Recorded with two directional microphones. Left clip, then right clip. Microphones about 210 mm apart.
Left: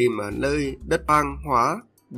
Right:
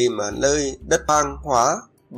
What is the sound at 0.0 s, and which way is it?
Speech, 40° left (ahead or behind).